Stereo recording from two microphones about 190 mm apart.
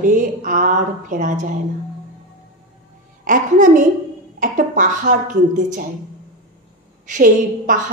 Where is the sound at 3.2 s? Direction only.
45° right (ahead or behind).